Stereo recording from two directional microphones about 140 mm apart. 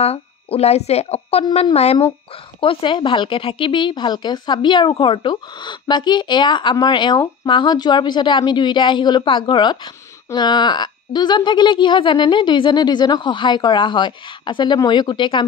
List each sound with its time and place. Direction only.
0.0 s speech: 45° left (ahead or behind)